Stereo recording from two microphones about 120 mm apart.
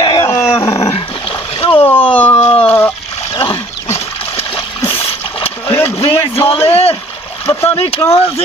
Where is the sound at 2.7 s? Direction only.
20° left (ahead or behind).